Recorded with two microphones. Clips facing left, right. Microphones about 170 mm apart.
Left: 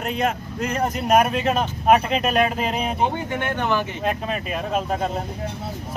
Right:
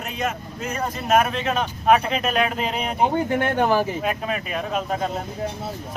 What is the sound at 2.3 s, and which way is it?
Speech, centre (ahead or behind).